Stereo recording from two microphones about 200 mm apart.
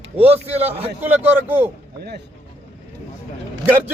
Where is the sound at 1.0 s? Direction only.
10° right (ahead or behind).